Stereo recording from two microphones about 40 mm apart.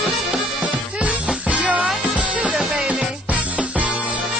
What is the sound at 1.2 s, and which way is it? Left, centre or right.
Music, right.